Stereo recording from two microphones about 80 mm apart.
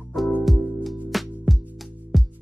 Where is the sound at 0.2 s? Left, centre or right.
Centre.